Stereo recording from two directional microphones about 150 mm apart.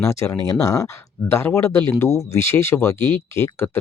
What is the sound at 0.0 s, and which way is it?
Speech, 20° left (ahead or behind).